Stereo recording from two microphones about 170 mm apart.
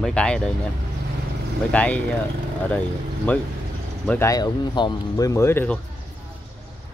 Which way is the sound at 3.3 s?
10° left (ahead or behind).